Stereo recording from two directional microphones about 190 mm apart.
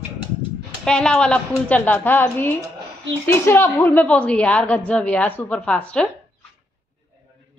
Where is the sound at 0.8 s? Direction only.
5° left (ahead or behind).